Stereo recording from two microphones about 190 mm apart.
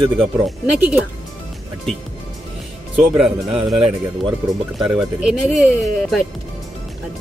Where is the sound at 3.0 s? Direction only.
5° right (ahead or behind).